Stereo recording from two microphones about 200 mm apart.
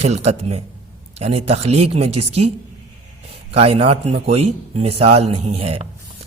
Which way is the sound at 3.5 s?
30° right (ahead or behind).